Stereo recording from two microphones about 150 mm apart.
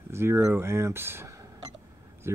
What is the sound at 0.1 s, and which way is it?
Speech, 15° right (ahead or behind).